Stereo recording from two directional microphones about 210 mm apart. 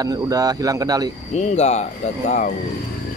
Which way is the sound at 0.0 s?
15° right (ahead or behind).